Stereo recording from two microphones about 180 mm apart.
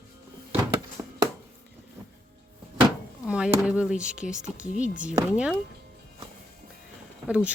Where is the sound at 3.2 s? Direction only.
5° right (ahead or behind).